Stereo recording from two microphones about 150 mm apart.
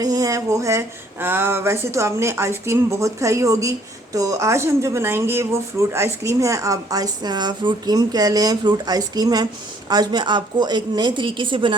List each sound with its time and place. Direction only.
0.0 s a woman's voice: 25° right (ahead or behind)